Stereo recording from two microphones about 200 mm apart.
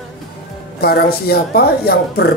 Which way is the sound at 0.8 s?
50° left (ahead or behind).